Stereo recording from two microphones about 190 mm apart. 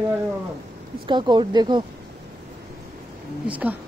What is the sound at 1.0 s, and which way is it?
Speech, 25° right (ahead or behind).